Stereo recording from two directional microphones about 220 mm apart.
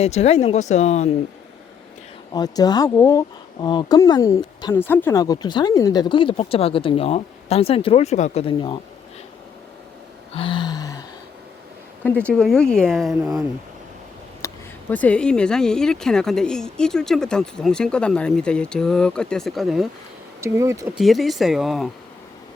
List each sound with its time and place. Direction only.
0.0 s speech: 30° left (ahead or behind)
2.3 s speech: 20° left (ahead or behind)
10.3 s a sound: 25° left (ahead or behind)
12.0 s speech: 5° left (ahead or behind)
14.4 s speech: 5° left (ahead or behind)
20.4 s speech: 15° right (ahead or behind)
21.0 s speech: centre (ahead or behind)